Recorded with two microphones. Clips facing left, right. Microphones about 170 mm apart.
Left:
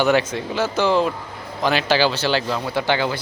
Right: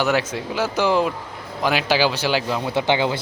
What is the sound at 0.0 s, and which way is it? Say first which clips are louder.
Speech: left 3 dB; 5° right (ahead or behind).